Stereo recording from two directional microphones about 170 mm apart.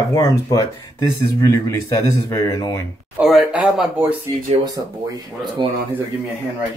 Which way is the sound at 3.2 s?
Centre (ahead or behind).